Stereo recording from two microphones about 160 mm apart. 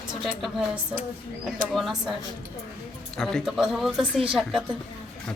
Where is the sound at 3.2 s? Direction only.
5° left (ahead or behind).